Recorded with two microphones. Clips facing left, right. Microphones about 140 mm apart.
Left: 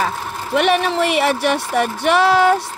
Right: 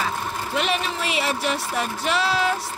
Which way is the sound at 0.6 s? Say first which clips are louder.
Left 10 dB; 60° left (ahead or behind).